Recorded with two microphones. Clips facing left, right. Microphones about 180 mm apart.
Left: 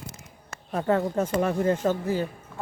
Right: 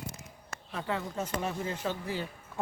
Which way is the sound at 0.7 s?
45° left (ahead or behind).